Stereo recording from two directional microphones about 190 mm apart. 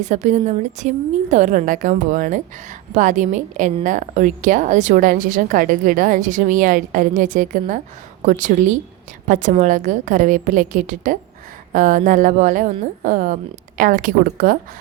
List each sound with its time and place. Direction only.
0.0 s a woman's voice: 35° right (ahead or behind)